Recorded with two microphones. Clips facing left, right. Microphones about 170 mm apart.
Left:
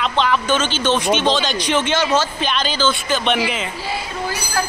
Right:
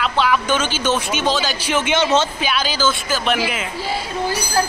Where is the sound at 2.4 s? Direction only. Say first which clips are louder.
Even; 10° right (ahead or behind).